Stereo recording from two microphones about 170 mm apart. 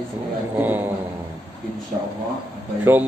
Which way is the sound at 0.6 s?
10° right (ahead or behind).